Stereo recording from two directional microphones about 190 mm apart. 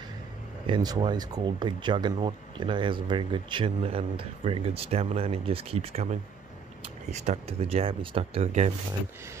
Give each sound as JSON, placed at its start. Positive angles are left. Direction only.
{"t": 0.7, "sound": "speech", "side_deg": -20}